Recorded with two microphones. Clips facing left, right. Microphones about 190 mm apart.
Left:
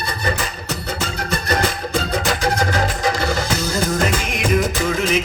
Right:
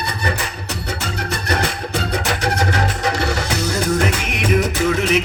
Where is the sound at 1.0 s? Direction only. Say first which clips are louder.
Left 1 dB; 65° right (ahead or behind).